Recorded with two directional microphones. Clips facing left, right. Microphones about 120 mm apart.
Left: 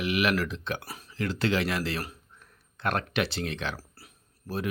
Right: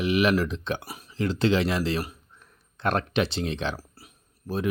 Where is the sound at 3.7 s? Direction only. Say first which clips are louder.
Right 3 dB; 20° right (ahead or behind).